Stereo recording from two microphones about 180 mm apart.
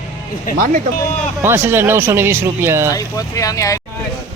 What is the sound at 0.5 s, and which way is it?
Speech, 50° right (ahead or behind).